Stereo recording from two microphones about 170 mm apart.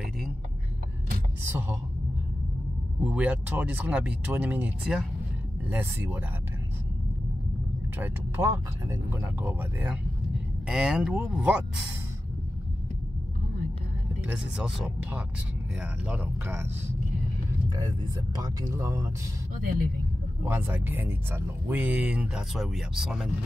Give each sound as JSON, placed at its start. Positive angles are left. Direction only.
{"t": 1.5, "sound": "speech", "side_deg": -10}
{"t": 3.0, "sound": "speech", "side_deg": -5}
{"t": 8.0, "sound": "speech", "side_deg": -15}
{"t": 14.2, "sound": "speech", "side_deg": -5}
{"t": 17.6, "sound": "speech", "side_deg": -25}
{"t": 20.4, "sound": "speech", "side_deg": -10}